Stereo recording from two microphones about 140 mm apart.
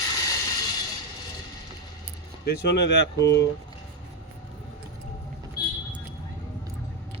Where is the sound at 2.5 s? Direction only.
90° left.